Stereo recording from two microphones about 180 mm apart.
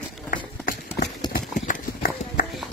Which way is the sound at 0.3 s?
50° left (ahead or behind).